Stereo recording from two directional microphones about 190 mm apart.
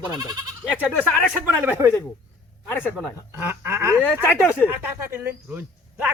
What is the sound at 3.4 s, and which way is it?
A man's voice, 10° right (ahead or behind).